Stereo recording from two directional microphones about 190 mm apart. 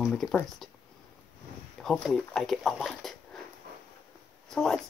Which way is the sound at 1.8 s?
Centre (ahead or behind).